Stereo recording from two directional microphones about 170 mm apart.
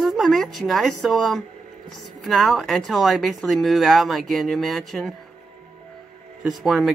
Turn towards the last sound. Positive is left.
turn(degrees=0)  # may be behind; listen again after turning